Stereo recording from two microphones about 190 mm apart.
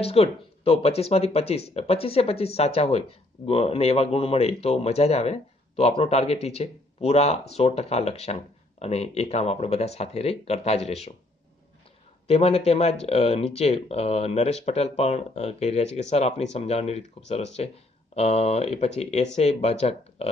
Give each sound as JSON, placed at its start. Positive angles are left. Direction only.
{"t": 0.0, "sound": "speech", "side_deg": 30}
{"t": 12.3, "sound": "speech", "side_deg": 35}